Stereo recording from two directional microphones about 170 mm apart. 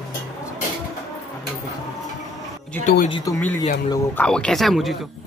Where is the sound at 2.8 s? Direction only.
45° left (ahead or behind).